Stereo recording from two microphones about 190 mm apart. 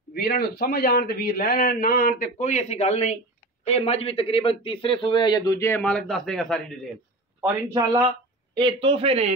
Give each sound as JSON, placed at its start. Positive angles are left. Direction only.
{"t": 0.1, "sound": "a man's voice", "side_deg": 55}
{"t": 7.7, "sound": "speech", "side_deg": -25}